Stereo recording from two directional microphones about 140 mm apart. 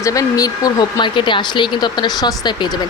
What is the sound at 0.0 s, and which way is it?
Speech, 25° left (ahead or behind).